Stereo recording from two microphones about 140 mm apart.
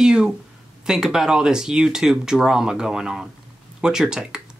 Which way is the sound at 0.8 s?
5° right (ahead or behind).